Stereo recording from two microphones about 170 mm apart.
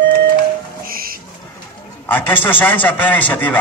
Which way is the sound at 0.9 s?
60° right (ahead or behind).